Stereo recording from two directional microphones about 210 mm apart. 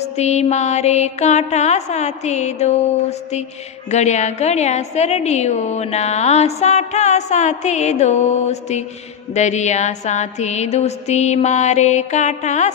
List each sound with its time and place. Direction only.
0.0 s a woman's voice: 30° left (ahead or behind)